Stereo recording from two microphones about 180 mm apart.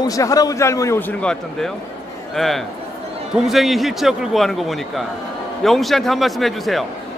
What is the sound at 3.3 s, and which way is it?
A man's voice, centre (ahead or behind).